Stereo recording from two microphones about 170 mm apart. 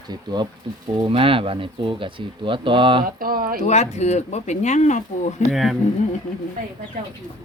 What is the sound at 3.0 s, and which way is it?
Speech, 55° right (ahead or behind).